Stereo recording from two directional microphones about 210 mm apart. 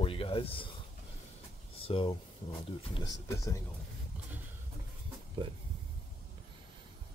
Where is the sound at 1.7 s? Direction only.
25° left (ahead or behind).